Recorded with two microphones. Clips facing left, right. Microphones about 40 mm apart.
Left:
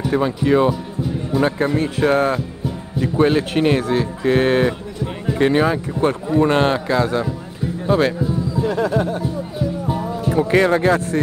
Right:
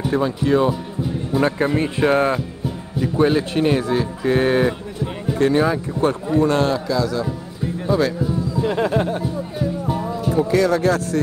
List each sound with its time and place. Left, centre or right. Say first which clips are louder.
0.1 s speech: left 2 dB; centre
0.7 s speech: left 1 dB; centre
3.0 s speech: left 1 dB; centre
6.4 s speech: left 3 dB; left
8.6 s speech: even; right
9.6 s music: even; centre
10.5 s speech: left 3 dB; left